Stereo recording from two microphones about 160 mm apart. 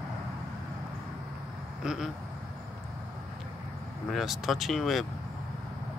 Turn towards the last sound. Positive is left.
turn(degrees=0)  # may be behind; listen again after turning